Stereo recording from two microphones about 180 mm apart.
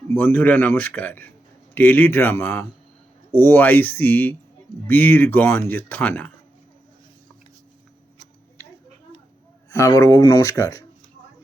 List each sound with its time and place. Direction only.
0.1 s speech: 10° left (ahead or behind)
9.6 s speech: 20° left (ahead or behind)